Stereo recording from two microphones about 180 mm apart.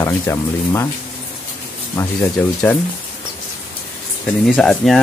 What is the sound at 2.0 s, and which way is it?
Speech, 10° left (ahead or behind).